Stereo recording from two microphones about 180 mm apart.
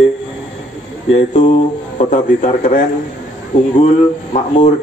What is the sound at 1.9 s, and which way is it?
Speech, 45° left (ahead or behind).